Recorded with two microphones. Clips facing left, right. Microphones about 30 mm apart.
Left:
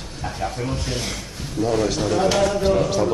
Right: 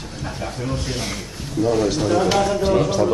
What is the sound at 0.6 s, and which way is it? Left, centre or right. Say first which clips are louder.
A man's voice: right 1 dB; centre.